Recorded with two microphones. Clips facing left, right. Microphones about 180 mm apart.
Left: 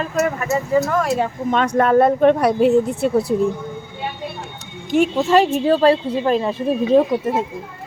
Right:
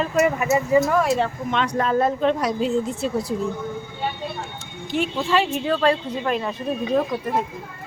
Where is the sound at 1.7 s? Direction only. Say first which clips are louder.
Left 8 dB; 60° left (ahead or behind).